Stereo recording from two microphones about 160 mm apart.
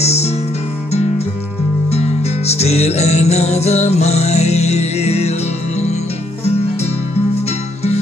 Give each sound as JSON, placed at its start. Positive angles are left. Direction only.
{"t": 0.0, "sound": "guitar", "side_deg": 40}
{"t": 0.9, "sound": "music", "side_deg": 45}
{"t": 7.4, "sound": "music", "side_deg": 40}